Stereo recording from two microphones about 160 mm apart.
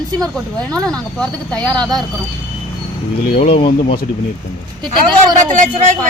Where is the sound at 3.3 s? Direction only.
35° left (ahead or behind).